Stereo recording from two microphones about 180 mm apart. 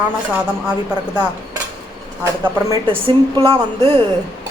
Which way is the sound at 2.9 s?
30° right (ahead or behind).